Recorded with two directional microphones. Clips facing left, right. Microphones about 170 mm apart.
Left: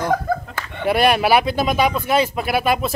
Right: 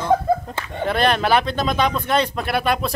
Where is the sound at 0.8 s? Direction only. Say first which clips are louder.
Left 3 dB; 10° left (ahead or behind).